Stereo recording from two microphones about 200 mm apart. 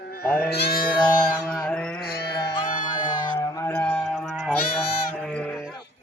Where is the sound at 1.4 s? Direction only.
5° left (ahead or behind).